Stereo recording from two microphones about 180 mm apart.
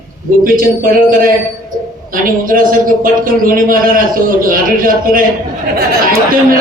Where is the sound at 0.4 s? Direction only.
50° right (ahead or behind).